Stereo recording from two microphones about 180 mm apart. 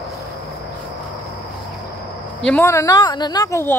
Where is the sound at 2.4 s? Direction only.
10° left (ahead or behind).